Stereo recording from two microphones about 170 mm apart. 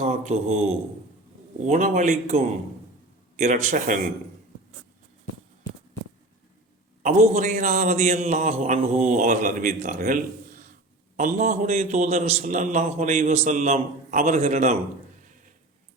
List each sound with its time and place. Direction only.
0.0 s a man's voice: 40° right (ahead or behind)
7.0 s a man's voice: 40° right (ahead or behind)